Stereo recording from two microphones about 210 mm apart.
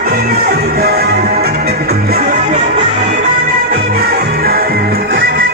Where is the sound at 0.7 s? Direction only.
45° right (ahead or behind).